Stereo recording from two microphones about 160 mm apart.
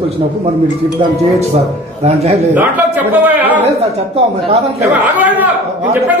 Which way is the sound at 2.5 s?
10° right (ahead or behind).